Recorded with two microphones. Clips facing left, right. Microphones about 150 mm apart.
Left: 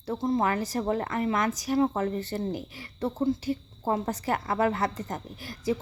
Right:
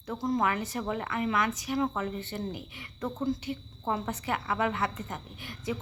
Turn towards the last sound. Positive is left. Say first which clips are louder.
# left 6 dB
turn(degrees=35)  # may be behind; listen again after turning